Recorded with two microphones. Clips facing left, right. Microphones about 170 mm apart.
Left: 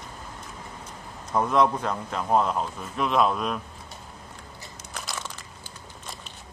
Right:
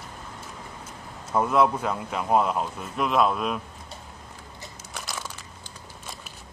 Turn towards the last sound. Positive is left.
turn(degrees=0)  # may be behind; listen again after turning